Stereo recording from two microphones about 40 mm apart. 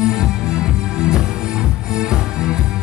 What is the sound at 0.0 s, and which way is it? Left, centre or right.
Music, right.